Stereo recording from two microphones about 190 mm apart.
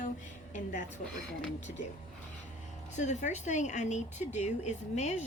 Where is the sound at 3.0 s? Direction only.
40° left (ahead or behind).